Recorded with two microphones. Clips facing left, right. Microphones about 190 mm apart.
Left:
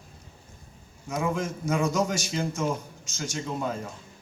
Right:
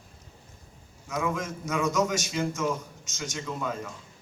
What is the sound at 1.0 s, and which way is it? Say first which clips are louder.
A man's voice: left 2 dB; 30° left (ahead or behind).